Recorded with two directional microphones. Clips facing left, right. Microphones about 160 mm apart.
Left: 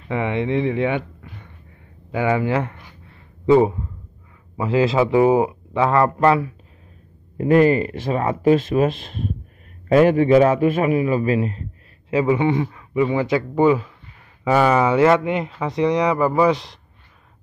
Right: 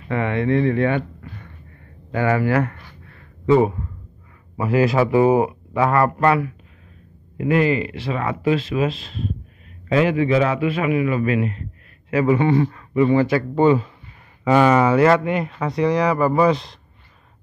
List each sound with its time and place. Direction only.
0.1 s speech: 15° left (ahead or behind)
2.1 s a sound: 15° left (ahead or behind)
4.6 s speech: 20° left (ahead or behind)
7.3 s speech: 40° left (ahead or behind)
12.3 s speech: 15° left (ahead or behind)